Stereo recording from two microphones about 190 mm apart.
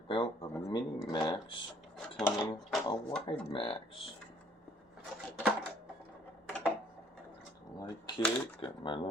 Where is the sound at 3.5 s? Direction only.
25° left (ahead or behind).